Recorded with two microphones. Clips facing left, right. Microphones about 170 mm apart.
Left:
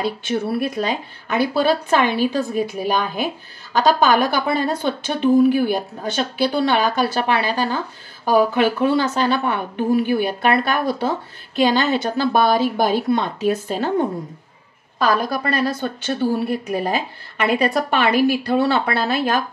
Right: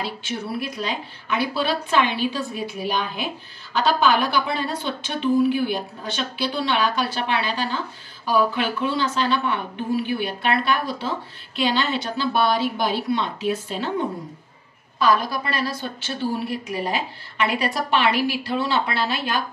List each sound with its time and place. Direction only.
0.0 s a woman's voice: 50° left (ahead or behind)